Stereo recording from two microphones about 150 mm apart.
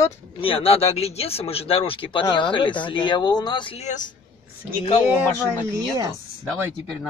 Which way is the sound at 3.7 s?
55° left (ahead or behind).